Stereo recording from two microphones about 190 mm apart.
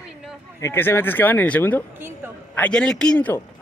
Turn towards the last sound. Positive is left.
turn(degrees=10)  # may be behind; listen again after turning